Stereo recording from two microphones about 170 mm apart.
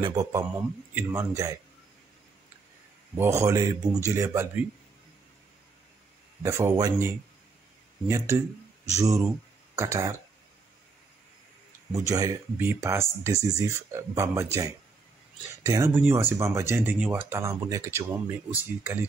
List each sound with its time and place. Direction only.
0.0 s a man's voice: 20° right (ahead or behind)
3.2 s speech: 15° right (ahead or behind)
6.4 s speech: 15° right (ahead or behind)
8.9 s a man's voice: 20° right (ahead or behind)
12.1 s speech: 20° right (ahead or behind)